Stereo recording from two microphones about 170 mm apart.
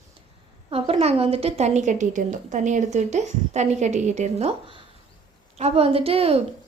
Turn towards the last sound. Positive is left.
turn(degrees=-35)  # may be behind; listen again after turning